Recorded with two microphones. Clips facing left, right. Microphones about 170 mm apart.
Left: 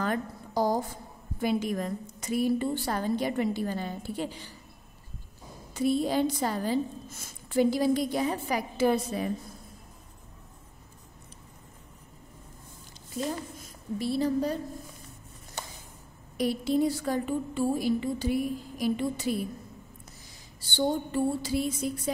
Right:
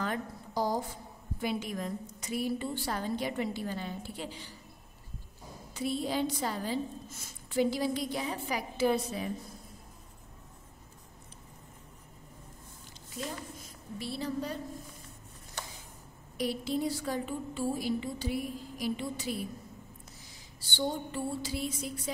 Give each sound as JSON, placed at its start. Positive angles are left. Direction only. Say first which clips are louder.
{"t": 0.0, "sound": "a sound", "louder": "left 4 dB", "side_deg": 50}
{"t": 1.4, "sound": "a woman's voice", "louder": "left 6 dB", "side_deg": 45}
{"t": 5.8, "sound": "a woman's voice", "louder": "left 6 dB", "side_deg": 45}
{"t": 13.9, "sound": "a woman's voice", "louder": "left 8 dB", "side_deg": 45}
{"t": 16.3, "sound": "a woman's voice", "louder": "left 6 dB", "side_deg": 45}
{"t": 20.7, "sound": "a woman's voice", "louder": "left 6 dB", "side_deg": 50}